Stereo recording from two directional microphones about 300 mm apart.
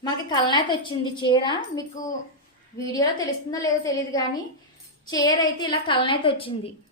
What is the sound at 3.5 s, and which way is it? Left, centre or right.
A woman's voice, centre.